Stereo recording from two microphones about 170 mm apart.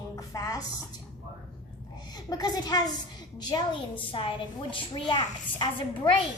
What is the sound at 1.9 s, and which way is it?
A woman's voice, 25° left (ahead or behind).